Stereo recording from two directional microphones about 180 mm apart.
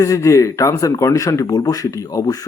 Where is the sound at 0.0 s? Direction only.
20° left (ahead or behind).